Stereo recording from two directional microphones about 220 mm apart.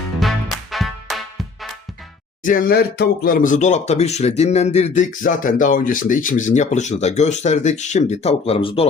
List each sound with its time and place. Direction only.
0.2 s music: centre (ahead or behind)
2.4 s speech: 40° left (ahead or behind)